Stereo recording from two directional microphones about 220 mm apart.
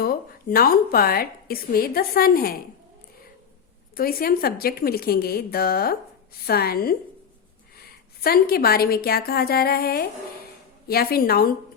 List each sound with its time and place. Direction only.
0.0 s a woman's voice: 40° left (ahead or behind)
3.9 s a woman's voice: 40° left (ahead or behind)